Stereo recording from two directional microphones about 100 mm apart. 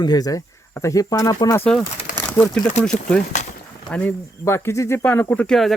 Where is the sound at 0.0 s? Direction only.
40° left (ahead or behind).